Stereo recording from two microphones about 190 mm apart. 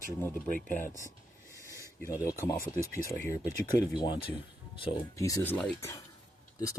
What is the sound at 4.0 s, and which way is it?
Speech, 25° left (ahead or behind).